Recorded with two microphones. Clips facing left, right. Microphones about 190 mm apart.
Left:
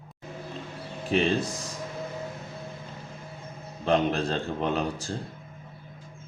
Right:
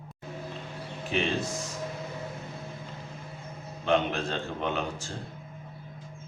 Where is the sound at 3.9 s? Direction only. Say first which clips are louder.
Left 2 dB; 35° left (ahead or behind).